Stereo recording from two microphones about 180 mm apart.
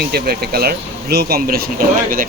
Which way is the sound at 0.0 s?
60° right (ahead or behind).